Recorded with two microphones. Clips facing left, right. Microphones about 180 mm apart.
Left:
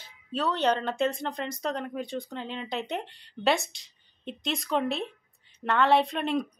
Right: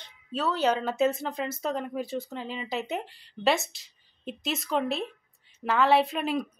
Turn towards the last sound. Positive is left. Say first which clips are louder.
# even
turn(degrees=-5)  # may be behind; listen again after turning